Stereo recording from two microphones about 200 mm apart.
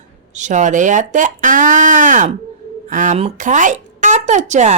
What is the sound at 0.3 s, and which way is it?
Speech, 35° right (ahead or behind).